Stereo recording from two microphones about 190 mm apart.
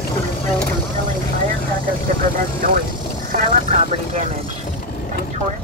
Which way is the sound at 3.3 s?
45° right (ahead or behind).